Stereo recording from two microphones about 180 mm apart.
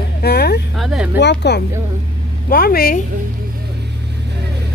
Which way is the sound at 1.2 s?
70° left (ahead or behind).